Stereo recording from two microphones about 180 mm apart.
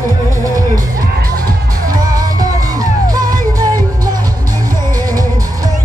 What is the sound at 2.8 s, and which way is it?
Music, 20° right (ahead or behind).